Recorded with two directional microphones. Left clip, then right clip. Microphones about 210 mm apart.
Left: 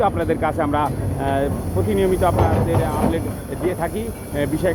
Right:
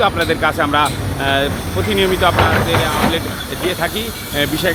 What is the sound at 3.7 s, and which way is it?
Speech, 10° right (ahead or behind).